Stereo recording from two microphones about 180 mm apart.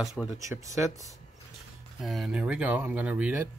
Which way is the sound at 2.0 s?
Centre (ahead or behind).